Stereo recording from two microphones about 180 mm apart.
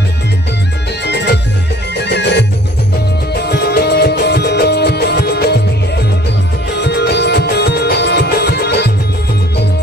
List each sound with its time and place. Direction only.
1.0 s music: 70° left (ahead or behind)
6.7 s music: 70° left (ahead or behind)